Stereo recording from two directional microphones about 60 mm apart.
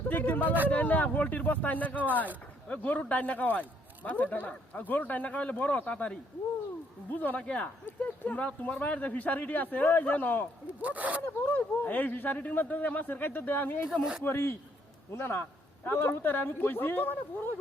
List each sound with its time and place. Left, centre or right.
0.1 s a sound: left
0.7 s speech: left
7.4 s speech: centre
7.9 s speech: left
10.8 s speech: right
11.5 s speech: left